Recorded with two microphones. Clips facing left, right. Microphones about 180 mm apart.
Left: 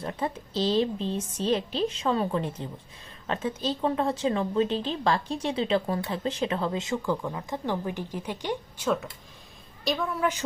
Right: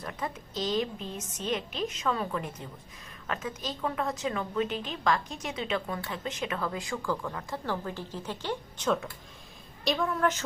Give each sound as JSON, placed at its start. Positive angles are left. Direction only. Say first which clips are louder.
{"t": 0.0, "sound": "a woman's voice", "louder": "left 5 dB", "side_deg": 30}
{"t": 9.8, "sound": "a woman's voice", "louder": "even", "side_deg": 0}